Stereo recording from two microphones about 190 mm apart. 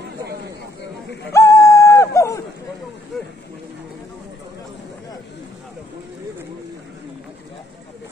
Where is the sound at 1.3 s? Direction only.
15° left (ahead or behind).